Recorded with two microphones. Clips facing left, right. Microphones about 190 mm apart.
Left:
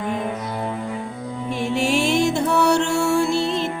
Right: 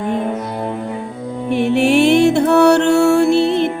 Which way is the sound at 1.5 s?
65° right (ahead or behind).